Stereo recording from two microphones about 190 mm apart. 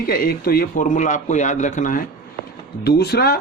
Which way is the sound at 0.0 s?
50° left (ahead or behind).